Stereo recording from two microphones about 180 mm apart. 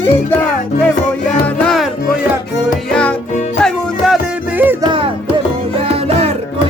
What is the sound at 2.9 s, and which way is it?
Music, 5° left (ahead or behind).